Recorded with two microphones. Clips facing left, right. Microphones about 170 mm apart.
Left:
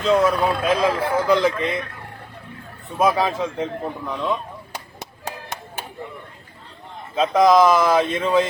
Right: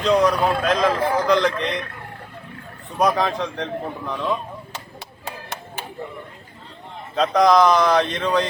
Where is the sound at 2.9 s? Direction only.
5° left (ahead or behind).